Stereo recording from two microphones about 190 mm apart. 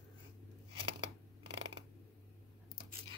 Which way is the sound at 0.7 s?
30° right (ahead or behind).